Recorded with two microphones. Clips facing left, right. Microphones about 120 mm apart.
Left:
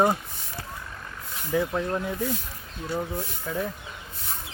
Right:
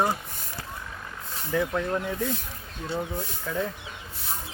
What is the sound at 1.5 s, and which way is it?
Speech, 10° left (ahead or behind).